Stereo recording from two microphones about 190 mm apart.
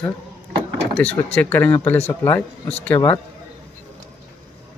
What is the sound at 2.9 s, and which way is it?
Speech, 25° left (ahead or behind).